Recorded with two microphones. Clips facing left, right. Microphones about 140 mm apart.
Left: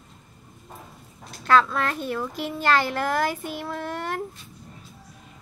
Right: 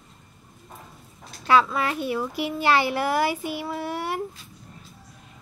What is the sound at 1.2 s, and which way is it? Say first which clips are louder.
Speech: even; centre (ahead or behind).